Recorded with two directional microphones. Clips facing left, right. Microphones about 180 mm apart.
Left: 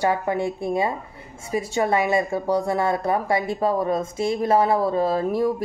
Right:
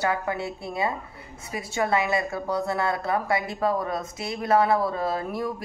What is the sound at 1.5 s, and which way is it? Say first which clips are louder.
Speech: left 9 dB; 35° left (ahead or behind).